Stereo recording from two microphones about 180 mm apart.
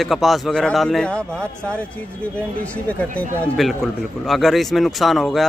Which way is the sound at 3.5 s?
Centre (ahead or behind).